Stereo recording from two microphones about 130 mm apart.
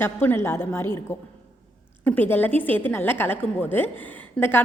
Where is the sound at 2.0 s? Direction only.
15° left (ahead or behind).